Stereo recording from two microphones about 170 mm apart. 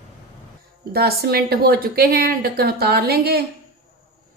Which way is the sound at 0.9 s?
65° right (ahead or behind).